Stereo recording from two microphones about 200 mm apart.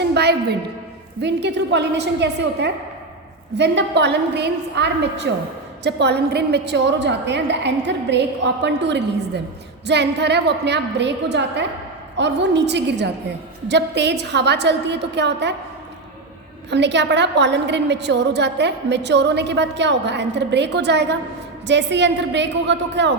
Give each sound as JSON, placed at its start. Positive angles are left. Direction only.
{"t": 0.1, "sound": "a sound", "side_deg": -55}
{"t": 1.2, "sound": "a woman's voice", "side_deg": -60}
{"t": 16.6, "sound": "a woman's voice", "side_deg": -60}